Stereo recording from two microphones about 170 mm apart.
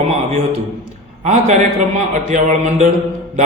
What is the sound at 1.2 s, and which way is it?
Speech, 45° right (ahead or behind).